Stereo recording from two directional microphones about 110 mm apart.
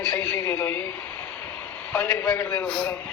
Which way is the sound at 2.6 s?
10° left (ahead or behind).